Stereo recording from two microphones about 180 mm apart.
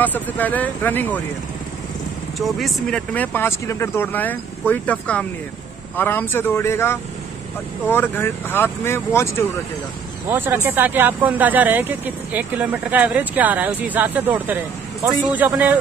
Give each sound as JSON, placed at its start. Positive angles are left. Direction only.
{"t": 0.0, "sound": "speech", "side_deg": 10}
{"t": 2.3, "sound": "speech", "side_deg": 0}
{"t": 10.3, "sound": "speech", "side_deg": -10}